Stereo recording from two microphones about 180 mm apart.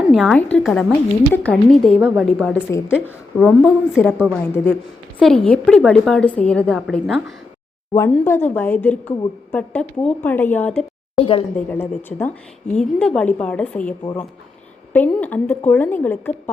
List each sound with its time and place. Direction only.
0.1 s a woman's voice: centre (ahead or behind)
4.3 s a woman's voice: 10° left (ahead or behind)
7.9 s a woman's voice: 10° left (ahead or behind)
11.1 s speech: 30° left (ahead or behind)
11.5 s a woman's voice: 10° left (ahead or behind)
14.9 s a woman's voice: 10° left (ahead or behind)